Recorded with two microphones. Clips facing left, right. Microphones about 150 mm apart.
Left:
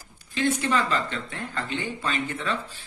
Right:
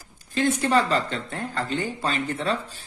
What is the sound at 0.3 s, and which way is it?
Speech, 45° right (ahead or behind).